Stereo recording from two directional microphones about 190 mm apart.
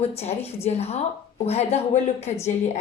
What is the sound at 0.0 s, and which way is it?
Speech, 35° left (ahead or behind).